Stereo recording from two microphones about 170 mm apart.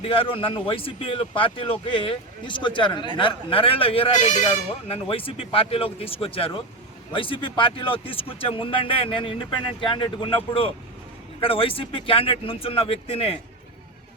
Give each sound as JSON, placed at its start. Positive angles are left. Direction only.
{"t": 0.0, "sound": "speech", "side_deg": 35}
{"t": 4.9, "sound": "speech", "side_deg": 30}